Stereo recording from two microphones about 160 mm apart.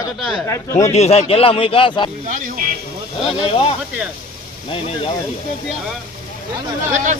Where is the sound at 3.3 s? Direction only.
30° left (ahead or behind).